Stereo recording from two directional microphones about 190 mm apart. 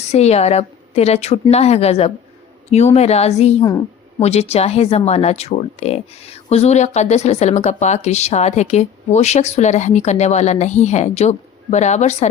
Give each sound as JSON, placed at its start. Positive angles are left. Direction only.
{"t": 0.0, "sound": "speech", "side_deg": 35}
{"t": 3.6, "sound": "a woman's voice", "side_deg": 20}
{"t": 4.2, "sound": "speech", "side_deg": 35}